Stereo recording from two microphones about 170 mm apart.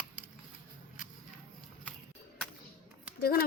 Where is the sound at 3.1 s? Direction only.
65° left (ahead or behind).